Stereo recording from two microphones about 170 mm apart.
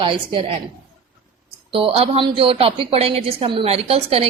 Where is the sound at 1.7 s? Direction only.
35° right (ahead or behind).